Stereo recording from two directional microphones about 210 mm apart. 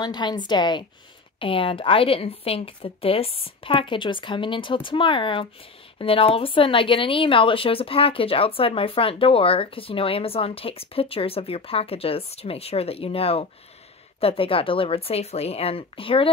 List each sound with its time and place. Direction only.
0.0 s a woman's voice: 20° left (ahead or behind)